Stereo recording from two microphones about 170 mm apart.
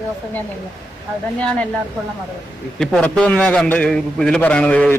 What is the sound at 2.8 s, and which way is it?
A man's voice, 5° left (ahead or behind).